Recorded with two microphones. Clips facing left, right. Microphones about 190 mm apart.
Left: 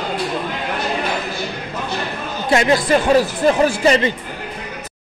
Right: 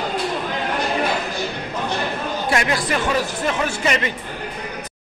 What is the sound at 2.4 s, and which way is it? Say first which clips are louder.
Speech: left 7 dB; 25° left (ahead or behind).